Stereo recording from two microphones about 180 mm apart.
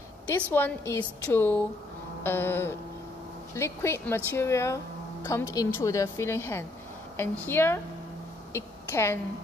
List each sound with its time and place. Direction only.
0.5 s a woman's voice: 10° left (ahead or behind)